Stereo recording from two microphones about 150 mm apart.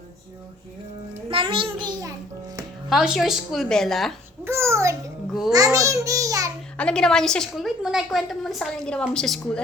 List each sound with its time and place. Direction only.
1.3 s a child's voice: 35° right (ahead or behind)
2.9 s a woman's voice: centre (ahead or behind)
4.4 s a sound: 15° right (ahead or behind)
5.5 s a child's voice: 25° right (ahead or behind)
6.7 s a woman's voice: 5° left (ahead or behind)